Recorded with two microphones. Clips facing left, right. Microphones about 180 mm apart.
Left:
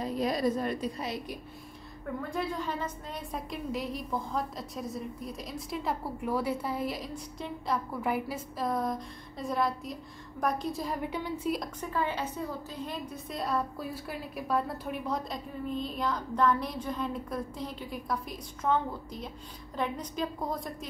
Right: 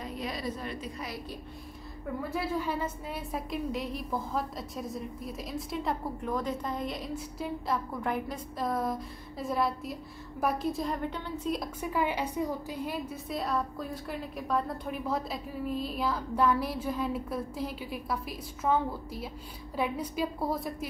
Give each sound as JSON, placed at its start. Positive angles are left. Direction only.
{"t": 0.0, "sound": "a sound", "side_deg": 40}
{"t": 0.9, "sound": "a woman's voice", "side_deg": 25}
{"t": 2.3, "sound": "a woman's voice", "side_deg": -10}
{"t": 11.8, "sound": "a woman's voice", "side_deg": -10}